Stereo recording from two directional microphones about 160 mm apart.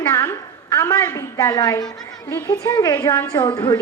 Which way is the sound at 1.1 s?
20° left (ahead or behind).